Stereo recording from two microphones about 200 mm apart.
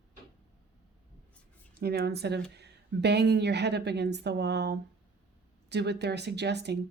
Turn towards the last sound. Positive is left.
turn(degrees=-55)  # may be behind; listen again after turning